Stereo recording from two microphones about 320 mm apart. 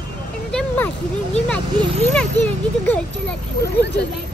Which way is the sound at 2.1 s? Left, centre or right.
Centre.